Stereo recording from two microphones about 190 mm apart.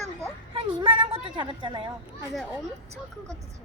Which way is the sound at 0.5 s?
25° right (ahead or behind).